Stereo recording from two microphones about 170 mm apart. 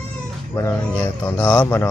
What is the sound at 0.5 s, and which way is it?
A man's voice, 20° left (ahead or behind).